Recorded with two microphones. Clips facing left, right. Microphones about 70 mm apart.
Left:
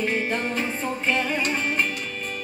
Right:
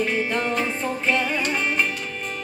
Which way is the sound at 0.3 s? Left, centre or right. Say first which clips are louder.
Right 2 dB; right.